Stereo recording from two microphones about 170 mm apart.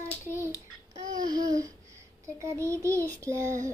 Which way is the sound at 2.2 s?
15° right (ahead or behind).